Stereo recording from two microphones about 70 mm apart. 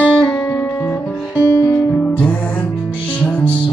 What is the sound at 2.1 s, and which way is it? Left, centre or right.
Music, centre.